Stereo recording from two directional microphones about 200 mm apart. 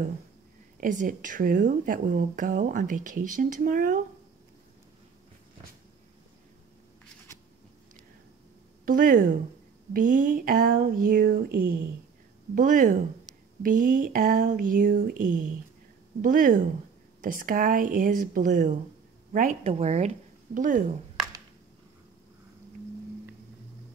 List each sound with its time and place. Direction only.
0.7 s speech: 40° right (ahead or behind)
8.8 s speech: 45° right (ahead or behind)